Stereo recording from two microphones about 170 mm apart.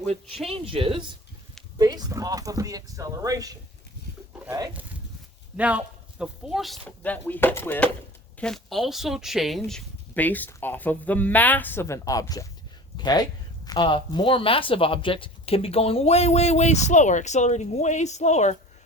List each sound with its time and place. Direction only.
0.1 s speech: 35° right (ahead or behind)
4.7 s speech: 10° right (ahead or behind)
6.8 s a woman's voice: 10° left (ahead or behind); by 18.5 s 45° left (ahead or behind)